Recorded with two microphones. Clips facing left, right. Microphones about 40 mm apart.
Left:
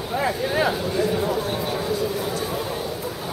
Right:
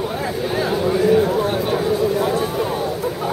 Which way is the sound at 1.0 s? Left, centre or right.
Right.